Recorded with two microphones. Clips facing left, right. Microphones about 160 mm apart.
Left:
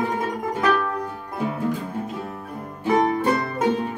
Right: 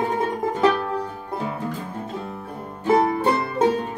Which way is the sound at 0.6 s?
30° right (ahead or behind).